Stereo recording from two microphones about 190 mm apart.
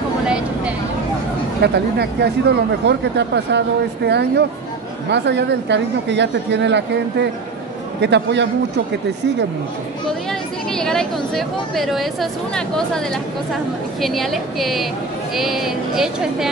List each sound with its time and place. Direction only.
1.6 s speech: 60° right (ahead or behind)
10.7 s a woman's voice: 5° left (ahead or behind)